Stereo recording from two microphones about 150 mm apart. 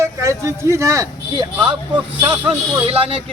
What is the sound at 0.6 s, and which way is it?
Speech, 20° right (ahead or behind).